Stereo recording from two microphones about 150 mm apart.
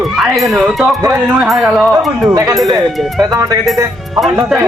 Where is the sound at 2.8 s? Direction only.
Centre (ahead or behind).